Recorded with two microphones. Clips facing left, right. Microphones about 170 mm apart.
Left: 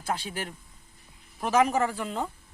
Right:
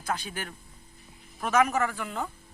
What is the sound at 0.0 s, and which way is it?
A man's voice, 30° left (ahead or behind).